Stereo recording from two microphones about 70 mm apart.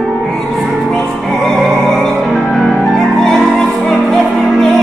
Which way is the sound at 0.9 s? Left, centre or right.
Centre.